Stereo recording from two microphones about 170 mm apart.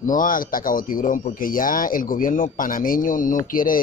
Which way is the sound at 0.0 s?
50° left (ahead or behind).